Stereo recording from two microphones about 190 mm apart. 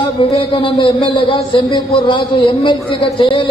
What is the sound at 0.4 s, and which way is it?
A man's voice, 30° left (ahead or behind).